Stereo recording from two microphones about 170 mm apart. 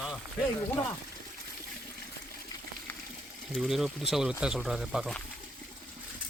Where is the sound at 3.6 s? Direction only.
Centre (ahead or behind).